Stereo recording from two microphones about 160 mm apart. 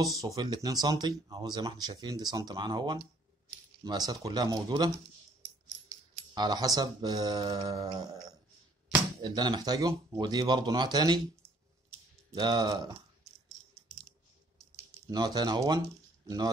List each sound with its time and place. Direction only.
0.2 s speech: 25° right (ahead or behind)
6.3 s speech: 25° right (ahead or behind)
9.2 s speech: 25° right (ahead or behind)
12.3 s speech: 25° right (ahead or behind)
15.0 s speech: 25° right (ahead or behind)